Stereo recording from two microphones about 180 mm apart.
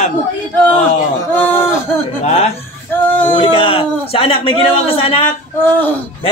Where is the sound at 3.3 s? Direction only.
30° left (ahead or behind).